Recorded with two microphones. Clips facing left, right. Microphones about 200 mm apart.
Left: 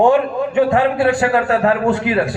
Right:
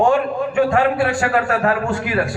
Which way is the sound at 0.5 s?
20° left (ahead or behind).